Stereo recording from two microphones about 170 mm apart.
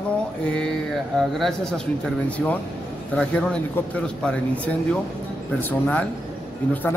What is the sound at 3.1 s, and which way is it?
Speech, 5° left (ahead or behind).